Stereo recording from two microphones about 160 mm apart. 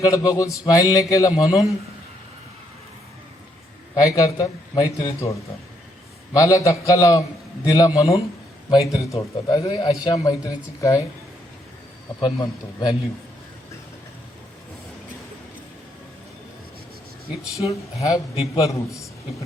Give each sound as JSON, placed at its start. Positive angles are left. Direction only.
{"t": 0.0, "sound": "a man's voice", "side_deg": 20}
{"t": 3.9, "sound": "a man's voice", "side_deg": 20}
{"t": 12.2, "sound": "a man's voice", "side_deg": 30}
{"t": 17.7, "sound": "a man's voice", "side_deg": 20}